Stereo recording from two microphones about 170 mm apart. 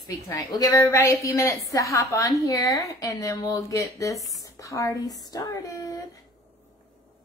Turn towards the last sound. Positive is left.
turn(degrees=20)  # may be behind; listen again after turning